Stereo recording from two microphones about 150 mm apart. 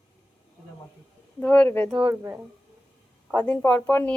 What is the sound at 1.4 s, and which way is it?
Speech, 10° left (ahead or behind).